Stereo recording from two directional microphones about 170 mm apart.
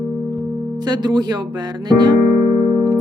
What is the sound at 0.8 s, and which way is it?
Speech, 25° right (ahead or behind).